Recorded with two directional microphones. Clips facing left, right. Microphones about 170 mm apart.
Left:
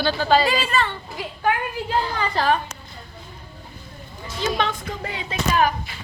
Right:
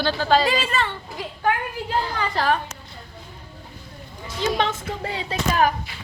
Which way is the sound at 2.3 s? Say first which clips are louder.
Left 1 dB; 20° left (ahead or behind).